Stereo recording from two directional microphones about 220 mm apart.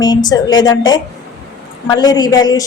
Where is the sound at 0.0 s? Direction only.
20° left (ahead or behind).